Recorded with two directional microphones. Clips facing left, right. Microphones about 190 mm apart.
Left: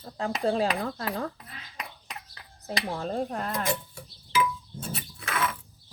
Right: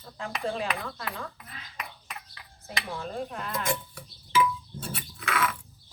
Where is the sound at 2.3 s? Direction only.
35° left (ahead or behind).